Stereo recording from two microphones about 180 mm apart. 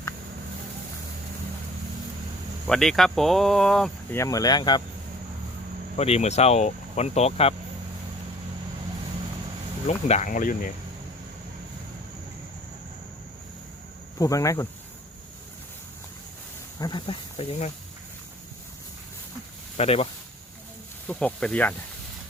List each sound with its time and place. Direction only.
2.6 s speech: centre (ahead or behind)
4.1 s speech: 15° left (ahead or behind)
6.0 s speech: 35° left (ahead or behind)
9.9 s speech: 40° left (ahead or behind)
14.2 s speech: 20° left (ahead or behind)
16.8 s speech: 25° left (ahead or behind)
19.7 s speech: 35° left (ahead or behind)
21.1 s speech: 10° left (ahead or behind)